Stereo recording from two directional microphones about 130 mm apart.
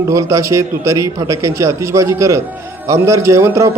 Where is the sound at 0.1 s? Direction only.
25° right (ahead or behind).